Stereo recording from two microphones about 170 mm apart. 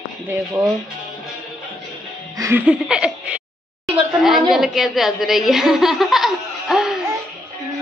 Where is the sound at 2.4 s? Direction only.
10° right (ahead or behind).